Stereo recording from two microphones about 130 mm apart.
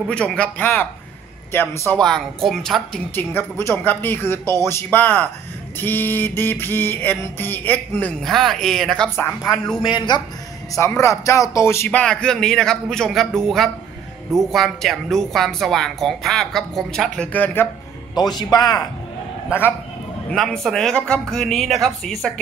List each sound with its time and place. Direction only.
0.1 s music: 10° left (ahead or behind)
2.0 s a woman's voice: 5° left (ahead or behind)
3.2 s music: 20° left (ahead or behind)
8.3 s a woman's voice: centre (ahead or behind)
9.1 s music: 15° left (ahead or behind)
9.8 s a man's voice: 40° left (ahead or behind)
10.7 s speech: 20° left (ahead or behind)
12.0 s a woman's voice: 5° left (ahead or behind)
17.3 s music: 15° left (ahead or behind)
18.1 s a man's voice: 30° left (ahead or behind)
20.2 s a woman's voice: 5° left (ahead or behind)